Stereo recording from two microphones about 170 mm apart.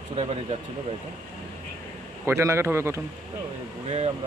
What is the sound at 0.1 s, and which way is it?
Speech, 35° right (ahead or behind).